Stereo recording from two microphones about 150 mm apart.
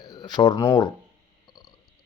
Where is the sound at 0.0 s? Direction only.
25° left (ahead or behind).